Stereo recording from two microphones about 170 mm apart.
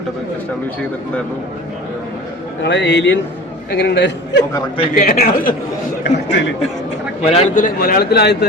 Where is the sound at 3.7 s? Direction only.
75° left (ahead or behind).